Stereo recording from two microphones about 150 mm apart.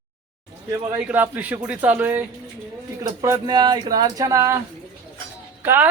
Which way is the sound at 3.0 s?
25° right (ahead or behind).